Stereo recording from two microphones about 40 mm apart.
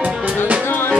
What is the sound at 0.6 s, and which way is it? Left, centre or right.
Music, left.